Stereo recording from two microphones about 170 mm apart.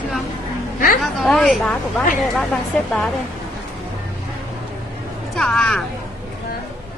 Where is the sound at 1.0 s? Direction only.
Centre (ahead or behind).